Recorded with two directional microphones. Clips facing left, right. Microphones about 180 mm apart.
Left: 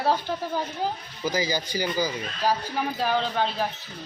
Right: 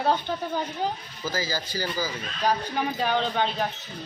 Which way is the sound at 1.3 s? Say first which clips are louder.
Left 3 dB; 15° left (ahead or behind).